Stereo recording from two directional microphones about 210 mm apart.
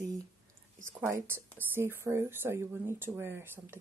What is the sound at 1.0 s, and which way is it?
Speech, 10° right (ahead or behind).